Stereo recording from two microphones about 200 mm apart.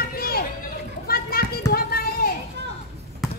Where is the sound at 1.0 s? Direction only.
50° left (ahead or behind).